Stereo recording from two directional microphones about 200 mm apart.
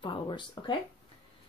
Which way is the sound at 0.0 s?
25° left (ahead or behind).